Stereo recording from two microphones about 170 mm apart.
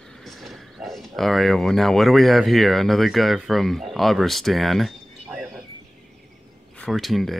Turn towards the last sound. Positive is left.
turn(degrees=0)  # may be behind; listen again after turning